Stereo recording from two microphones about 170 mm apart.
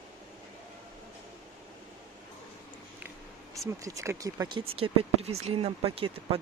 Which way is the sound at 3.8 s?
20° right (ahead or behind).